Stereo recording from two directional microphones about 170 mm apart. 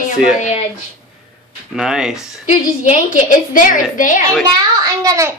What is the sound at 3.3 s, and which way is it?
Speech, 50° left (ahead or behind).